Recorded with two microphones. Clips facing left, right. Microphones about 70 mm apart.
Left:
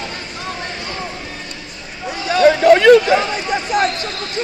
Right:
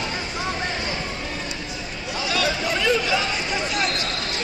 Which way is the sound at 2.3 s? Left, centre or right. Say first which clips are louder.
Left 15 dB; left.